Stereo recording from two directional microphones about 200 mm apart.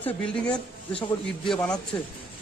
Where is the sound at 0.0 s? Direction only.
5° left (ahead or behind).